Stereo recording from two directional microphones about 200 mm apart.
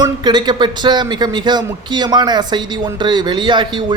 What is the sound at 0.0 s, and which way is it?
Speech, 20° right (ahead or behind).